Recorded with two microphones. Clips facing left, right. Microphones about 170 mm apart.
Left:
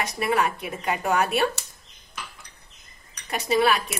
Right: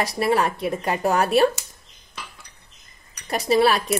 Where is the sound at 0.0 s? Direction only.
35° right (ahead or behind).